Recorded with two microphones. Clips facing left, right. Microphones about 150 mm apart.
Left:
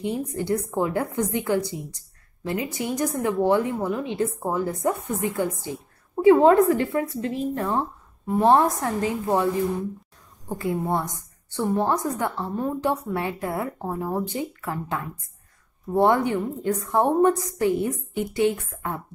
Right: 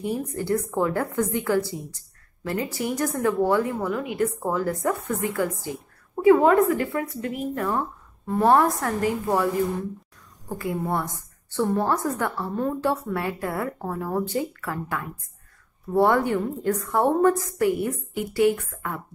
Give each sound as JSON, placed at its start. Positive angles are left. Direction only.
{"t": 0.0, "sound": "a woman's voice", "side_deg": 20}
{"t": 10.5, "sound": "a woman's voice", "side_deg": 20}